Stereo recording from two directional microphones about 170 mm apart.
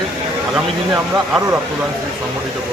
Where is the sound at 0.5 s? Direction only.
5° right (ahead or behind).